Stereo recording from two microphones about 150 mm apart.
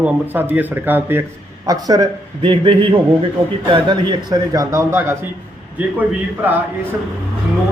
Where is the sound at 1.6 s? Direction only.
25° right (ahead or behind).